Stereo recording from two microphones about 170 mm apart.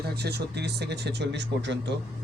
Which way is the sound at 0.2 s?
75° right (ahead or behind).